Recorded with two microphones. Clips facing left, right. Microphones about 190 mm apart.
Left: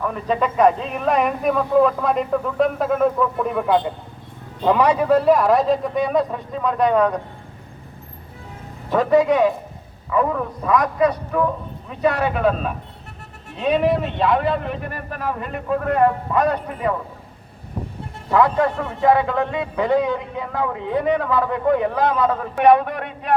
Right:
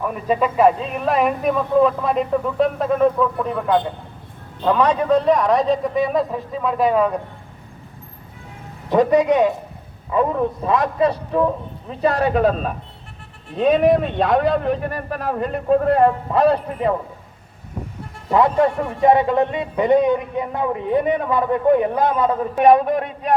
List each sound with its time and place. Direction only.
0.0 s speech: 10° right (ahead or behind)
8.9 s a man's voice: 20° right (ahead or behind)
18.3 s a man's voice: 25° right (ahead or behind)